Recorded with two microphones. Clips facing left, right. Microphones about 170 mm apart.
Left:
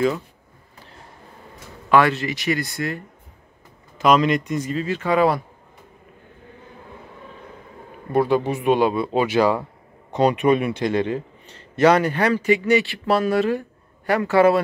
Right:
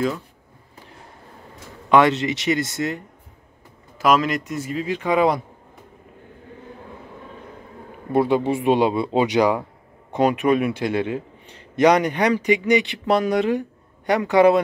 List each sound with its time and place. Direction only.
1.9 s speech: 20° right (ahead or behind)
4.0 s speech: 5° right (ahead or behind)
8.1 s a man's voice: 25° right (ahead or behind)